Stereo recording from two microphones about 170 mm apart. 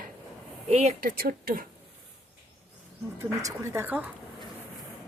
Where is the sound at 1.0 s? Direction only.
60° right (ahead or behind).